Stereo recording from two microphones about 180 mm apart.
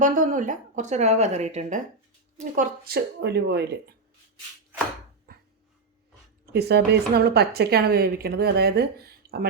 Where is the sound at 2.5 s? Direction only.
60° right (ahead or behind).